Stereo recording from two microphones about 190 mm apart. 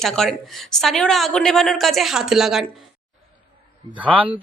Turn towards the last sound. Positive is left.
turn(degrees=-5)  # may be behind; listen again after turning